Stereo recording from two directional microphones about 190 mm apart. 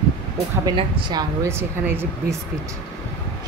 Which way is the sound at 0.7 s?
25° right (ahead or behind).